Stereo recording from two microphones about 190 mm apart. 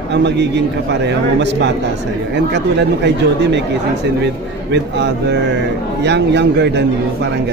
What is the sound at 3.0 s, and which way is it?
Speech, 65° right (ahead or behind).